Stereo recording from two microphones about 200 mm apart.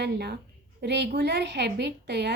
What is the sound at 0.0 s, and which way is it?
A woman's voice, 55° right (ahead or behind).